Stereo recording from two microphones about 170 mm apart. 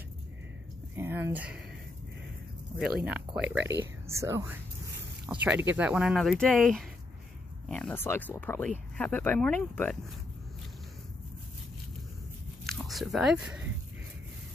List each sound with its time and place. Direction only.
0.9 s speech: 15° right (ahead or behind)
3.1 s speech: 10° right (ahead or behind); by 9.9 s 10° left (ahead or behind)
12.6 s speech: centre (ahead or behind)